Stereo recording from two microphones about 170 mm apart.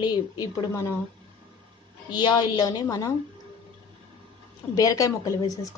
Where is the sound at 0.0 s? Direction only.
25° left (ahead or behind).